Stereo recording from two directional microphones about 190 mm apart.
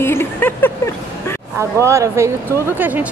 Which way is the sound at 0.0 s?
10° left (ahead or behind).